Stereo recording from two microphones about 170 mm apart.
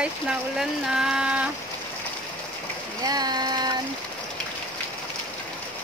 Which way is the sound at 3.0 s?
25° right (ahead or behind).